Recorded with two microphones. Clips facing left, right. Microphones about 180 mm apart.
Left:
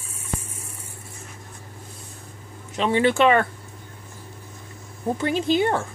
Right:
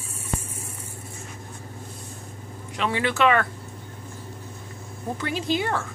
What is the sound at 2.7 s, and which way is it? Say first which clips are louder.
Speech: left 5 dB; 25° left (ahead or behind).